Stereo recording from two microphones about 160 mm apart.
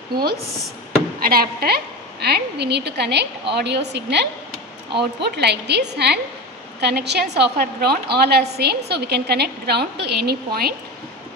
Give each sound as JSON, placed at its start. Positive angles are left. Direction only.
{"t": 0.1, "sound": "a woman's voice", "side_deg": -80}